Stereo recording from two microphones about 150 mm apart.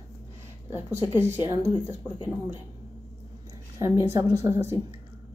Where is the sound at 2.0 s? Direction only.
30° left (ahead or behind).